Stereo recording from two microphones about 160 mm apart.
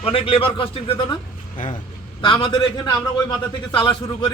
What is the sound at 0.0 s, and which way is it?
Speech, 35° left (ahead or behind).